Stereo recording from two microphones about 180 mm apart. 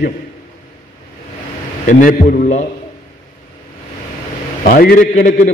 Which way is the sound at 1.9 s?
50° left (ahead or behind).